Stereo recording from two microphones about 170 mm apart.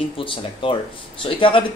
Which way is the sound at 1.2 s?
30° left (ahead or behind).